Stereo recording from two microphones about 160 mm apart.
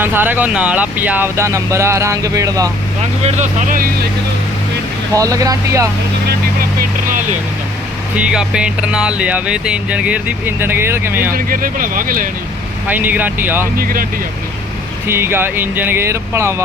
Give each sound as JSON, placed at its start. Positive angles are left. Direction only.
{"t": 0.0, "sound": "speech", "side_deg": -15}
{"t": 3.2, "sound": "speech", "side_deg": -45}
{"t": 5.1, "sound": "speech", "side_deg": -20}
{"t": 8.1, "sound": "speech", "side_deg": -5}
{"t": 11.3, "sound": "speech", "side_deg": -60}
{"t": 12.9, "sound": "speech", "side_deg": -10}
{"t": 13.7, "sound": "speech", "side_deg": -60}
{"t": 15.0, "sound": "speech", "side_deg": -15}